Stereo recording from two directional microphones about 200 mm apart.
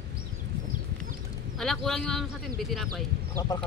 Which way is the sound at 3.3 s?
20° left (ahead or behind).